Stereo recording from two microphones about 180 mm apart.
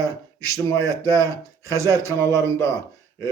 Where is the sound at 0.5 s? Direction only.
15° left (ahead or behind).